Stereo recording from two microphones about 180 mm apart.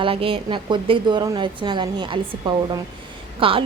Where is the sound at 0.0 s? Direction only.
30° right (ahead or behind).